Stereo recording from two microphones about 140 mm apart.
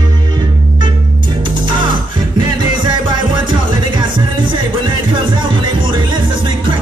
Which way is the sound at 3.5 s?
35° right (ahead or behind).